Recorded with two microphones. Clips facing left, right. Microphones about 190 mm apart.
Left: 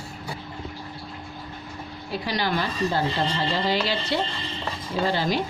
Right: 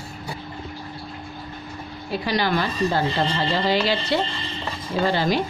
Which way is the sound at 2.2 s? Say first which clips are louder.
Right 4 dB; 75° right (ahead or behind).